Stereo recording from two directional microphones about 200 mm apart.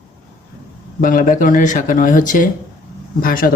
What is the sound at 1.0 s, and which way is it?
Speech, 45° left (ahead or behind).